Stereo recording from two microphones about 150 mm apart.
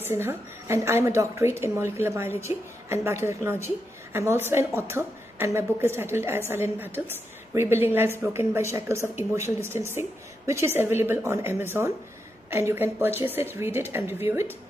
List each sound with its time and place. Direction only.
0.0 s a woman's voice: 15° right (ahead or behind)